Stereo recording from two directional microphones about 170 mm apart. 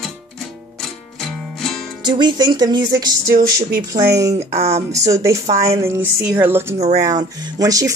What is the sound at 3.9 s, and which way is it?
Speech, 20° right (ahead or behind).